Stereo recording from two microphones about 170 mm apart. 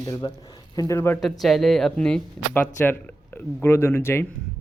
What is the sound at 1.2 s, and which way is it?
Speech, centre (ahead or behind).